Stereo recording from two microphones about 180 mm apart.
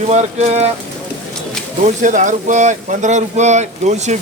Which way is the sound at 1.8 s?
45° right (ahead or behind).